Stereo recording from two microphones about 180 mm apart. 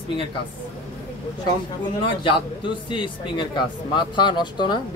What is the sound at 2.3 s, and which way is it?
Speech, 25° left (ahead or behind).